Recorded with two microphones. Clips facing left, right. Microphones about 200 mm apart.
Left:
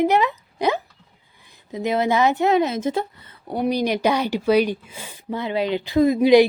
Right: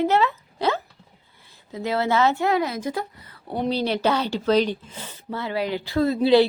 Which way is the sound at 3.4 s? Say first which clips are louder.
Left 3 dB; 10° left (ahead or behind).